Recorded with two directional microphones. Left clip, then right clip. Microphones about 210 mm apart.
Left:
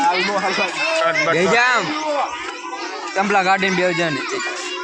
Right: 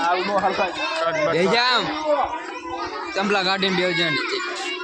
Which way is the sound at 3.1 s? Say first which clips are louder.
Left 5 dB; 30° left (ahead or behind).